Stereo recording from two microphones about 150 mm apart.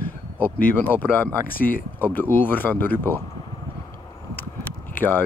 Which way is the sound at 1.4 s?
70° left (ahead or behind).